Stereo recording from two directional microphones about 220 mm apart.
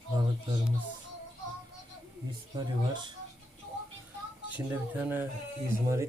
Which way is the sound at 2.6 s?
20° right (ahead or behind).